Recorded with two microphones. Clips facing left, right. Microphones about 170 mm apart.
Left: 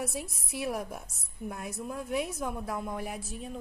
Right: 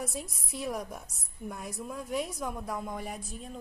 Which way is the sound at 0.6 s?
5° left (ahead or behind).